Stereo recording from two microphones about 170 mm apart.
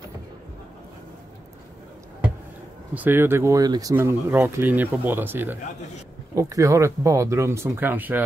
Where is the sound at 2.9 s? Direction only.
10° right (ahead or behind).